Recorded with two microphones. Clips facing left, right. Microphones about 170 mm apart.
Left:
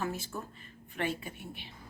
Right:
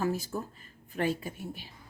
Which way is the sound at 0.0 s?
35° right (ahead or behind).